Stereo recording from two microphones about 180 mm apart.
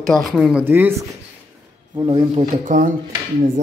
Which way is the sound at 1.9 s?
30° right (ahead or behind).